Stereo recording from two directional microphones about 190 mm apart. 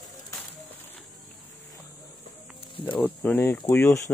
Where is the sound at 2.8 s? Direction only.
10° left (ahead or behind).